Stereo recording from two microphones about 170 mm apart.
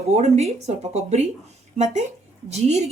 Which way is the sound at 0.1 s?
40° right (ahead or behind).